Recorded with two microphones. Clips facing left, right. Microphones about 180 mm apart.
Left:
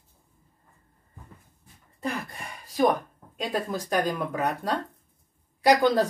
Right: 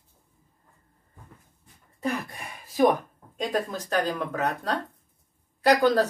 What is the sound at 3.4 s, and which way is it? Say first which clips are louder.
Speech: right 1 dB; 10° left (ahead or behind).